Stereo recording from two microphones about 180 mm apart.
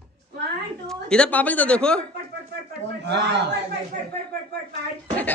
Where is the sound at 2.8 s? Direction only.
70° right (ahead or behind).